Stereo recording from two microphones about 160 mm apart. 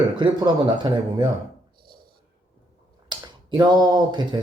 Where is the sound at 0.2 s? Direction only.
30° right (ahead or behind).